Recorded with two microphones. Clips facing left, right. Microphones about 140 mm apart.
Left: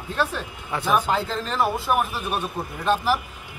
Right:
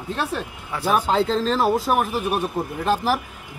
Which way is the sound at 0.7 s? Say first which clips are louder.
Right 1 dB; 10° right (ahead or behind).